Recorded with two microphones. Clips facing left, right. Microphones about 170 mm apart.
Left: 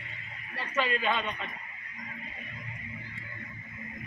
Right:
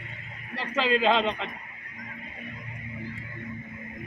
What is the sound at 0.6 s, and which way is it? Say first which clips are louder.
Speech: right 5 dB; 90° right.